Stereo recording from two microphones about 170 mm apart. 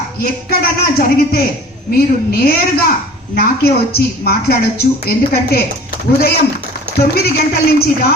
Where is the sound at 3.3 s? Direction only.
65° left (ahead or behind).